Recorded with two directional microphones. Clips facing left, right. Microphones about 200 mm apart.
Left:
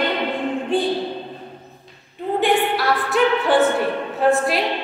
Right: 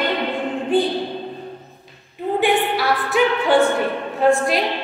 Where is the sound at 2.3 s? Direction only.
Centre (ahead or behind).